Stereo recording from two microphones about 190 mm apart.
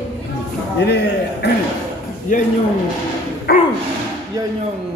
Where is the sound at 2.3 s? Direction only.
45° left (ahead or behind).